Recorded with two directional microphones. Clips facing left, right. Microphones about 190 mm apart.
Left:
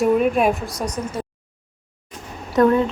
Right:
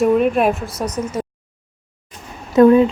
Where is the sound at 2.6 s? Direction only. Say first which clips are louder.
Right 6 dB; 20° right (ahead or behind).